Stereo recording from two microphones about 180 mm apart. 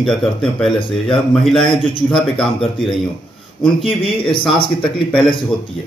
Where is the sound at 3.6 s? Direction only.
30° left (ahead or behind).